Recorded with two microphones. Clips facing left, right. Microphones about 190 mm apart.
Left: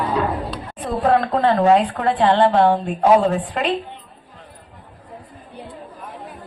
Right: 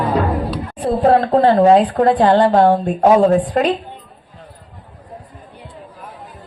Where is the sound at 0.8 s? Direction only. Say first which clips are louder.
Right 4 dB; 35° right (ahead or behind).